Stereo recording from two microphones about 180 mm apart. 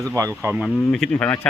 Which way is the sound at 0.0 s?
20° right (ahead or behind).